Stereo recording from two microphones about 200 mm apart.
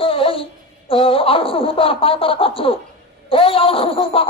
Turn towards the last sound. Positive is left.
turn(degrees=25)  # may be behind; listen again after turning